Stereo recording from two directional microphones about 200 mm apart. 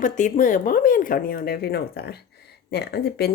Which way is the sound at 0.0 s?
40° left (ahead or behind).